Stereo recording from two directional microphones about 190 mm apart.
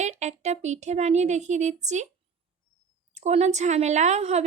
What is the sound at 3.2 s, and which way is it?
A woman's voice, 35° right (ahead or behind).